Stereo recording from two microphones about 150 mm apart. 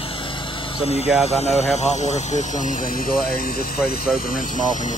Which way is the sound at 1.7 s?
50° left (ahead or behind).